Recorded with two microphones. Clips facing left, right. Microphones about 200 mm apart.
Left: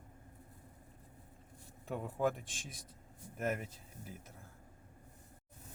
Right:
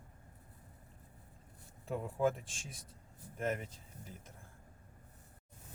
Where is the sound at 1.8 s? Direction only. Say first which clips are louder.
Right 2 dB; centre (ahead or behind).